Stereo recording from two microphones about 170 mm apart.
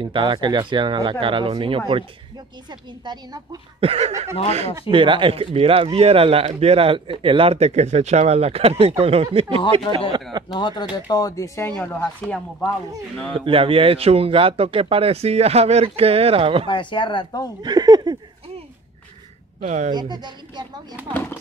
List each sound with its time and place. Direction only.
0.0 s speech: 30° right (ahead or behind)
3.8 s speech: 35° right (ahead or behind)
10.5 s speech: 25° left (ahead or behind); by 12.6 s 5° left (ahead or behind)
13.3 s speech: 30° right (ahead or behind)
16.6 s speech: 30° left (ahead or behind)
17.6 s speech: 25° right (ahead or behind)
19.6 s speech: 45° right (ahead or behind)
19.9 s speech: 25° right (ahead or behind)
21.1 s speech: 10° left (ahead or behind)